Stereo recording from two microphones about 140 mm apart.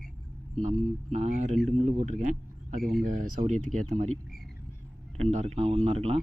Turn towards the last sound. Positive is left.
turn(degrees=-45)  # may be behind; listen again after turning